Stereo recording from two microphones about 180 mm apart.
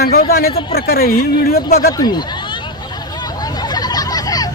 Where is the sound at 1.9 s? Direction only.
20° left (ahead or behind).